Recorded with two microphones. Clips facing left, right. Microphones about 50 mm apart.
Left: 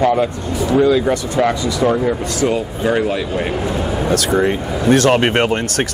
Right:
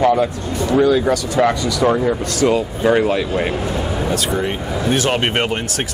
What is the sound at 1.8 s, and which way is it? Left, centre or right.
Speech, centre.